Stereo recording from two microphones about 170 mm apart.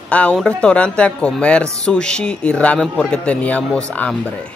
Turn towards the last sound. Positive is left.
turn(degrees=5)  # may be behind; listen again after turning